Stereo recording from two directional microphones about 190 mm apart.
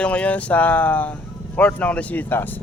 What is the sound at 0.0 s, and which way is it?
Speech, 5° left (ahead or behind).